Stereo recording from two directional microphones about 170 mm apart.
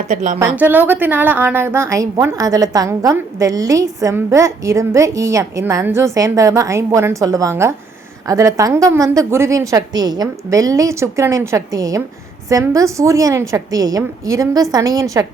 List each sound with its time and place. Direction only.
0.1 s a woman's voice: 45° right (ahead or behind)
0.3 s a woman's voice: 15° right (ahead or behind)